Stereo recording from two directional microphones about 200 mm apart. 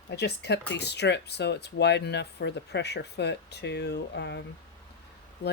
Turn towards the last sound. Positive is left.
turn(degrees=55)  # may be behind; listen again after turning